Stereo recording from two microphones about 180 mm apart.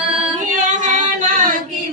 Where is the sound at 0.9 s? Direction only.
45° right (ahead or behind).